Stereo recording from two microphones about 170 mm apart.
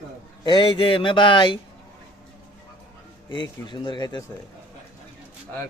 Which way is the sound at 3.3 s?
25° left (ahead or behind).